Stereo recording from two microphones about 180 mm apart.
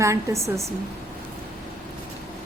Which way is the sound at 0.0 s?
15° right (ahead or behind).